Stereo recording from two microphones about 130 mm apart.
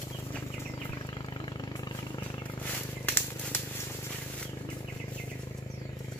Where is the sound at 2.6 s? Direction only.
15° left (ahead or behind).